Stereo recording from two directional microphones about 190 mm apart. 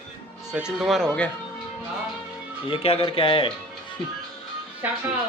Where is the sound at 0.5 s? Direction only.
5° right (ahead or behind).